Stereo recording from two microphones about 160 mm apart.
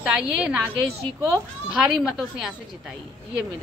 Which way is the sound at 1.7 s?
5° right (ahead or behind).